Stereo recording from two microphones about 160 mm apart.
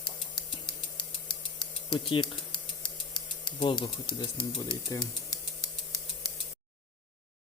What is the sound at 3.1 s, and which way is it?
Speech, 25° left (ahead or behind).